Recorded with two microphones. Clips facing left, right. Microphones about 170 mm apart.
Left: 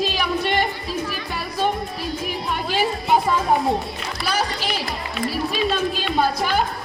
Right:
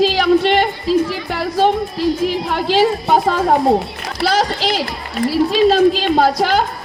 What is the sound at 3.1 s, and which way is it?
Speech, 70° right (ahead or behind).